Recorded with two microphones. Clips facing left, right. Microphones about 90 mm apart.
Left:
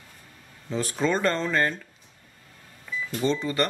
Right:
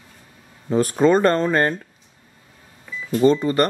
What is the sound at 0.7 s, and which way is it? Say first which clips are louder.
Speech: right 9 dB; 45° right (ahead or behind).